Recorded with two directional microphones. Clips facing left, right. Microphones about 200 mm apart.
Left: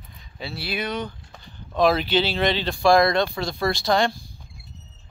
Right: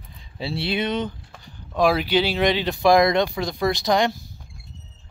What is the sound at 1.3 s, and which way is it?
Speech, 10° right (ahead or behind).